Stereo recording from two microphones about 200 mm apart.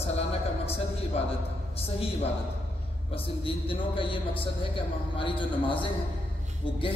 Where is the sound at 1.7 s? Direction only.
30° left (ahead or behind).